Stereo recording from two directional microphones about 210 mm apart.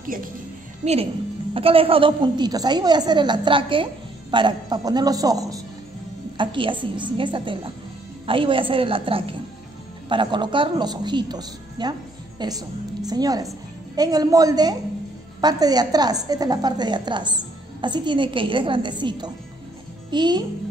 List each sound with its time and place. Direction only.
0.0 s a woman's voice: 40° right (ahead or behind); by 20.4 s 20° right (ahead or behind)